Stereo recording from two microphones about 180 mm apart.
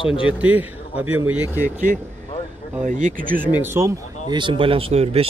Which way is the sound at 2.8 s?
45° right (ahead or behind).